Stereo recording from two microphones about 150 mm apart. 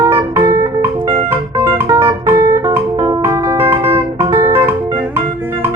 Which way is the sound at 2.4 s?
20° right (ahead or behind).